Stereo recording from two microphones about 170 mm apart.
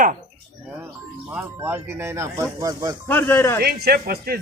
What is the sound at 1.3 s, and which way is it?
Speech, 10° right (ahead or behind).